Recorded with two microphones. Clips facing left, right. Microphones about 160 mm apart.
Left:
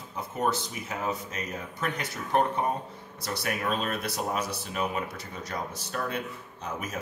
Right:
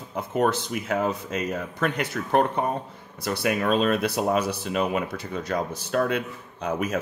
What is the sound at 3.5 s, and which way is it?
Speech, 90° right.